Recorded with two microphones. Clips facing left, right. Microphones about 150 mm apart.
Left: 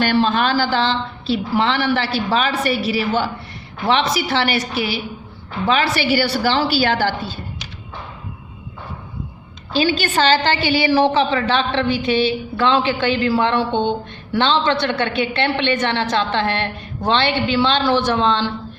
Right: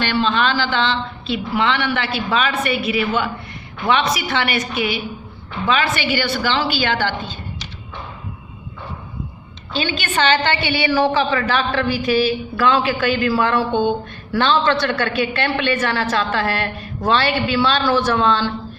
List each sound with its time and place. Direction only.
0.0 s speech: 45° left (ahead or behind)
9.7 s a woman's voice: 40° left (ahead or behind); by 18.5 s 20° left (ahead or behind)